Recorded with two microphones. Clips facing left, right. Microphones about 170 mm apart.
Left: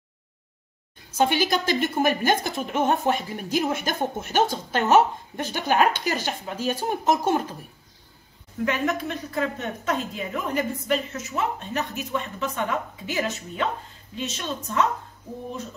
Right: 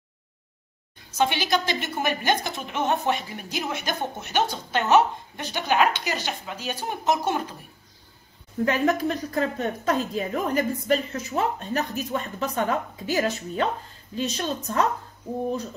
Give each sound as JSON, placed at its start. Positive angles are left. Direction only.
{"t": 1.2, "sound": "a woman's voice", "side_deg": 45}
{"t": 8.6, "sound": "a woman's voice", "side_deg": -35}